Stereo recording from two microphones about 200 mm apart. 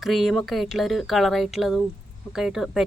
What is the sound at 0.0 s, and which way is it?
Speech, centre (ahead or behind).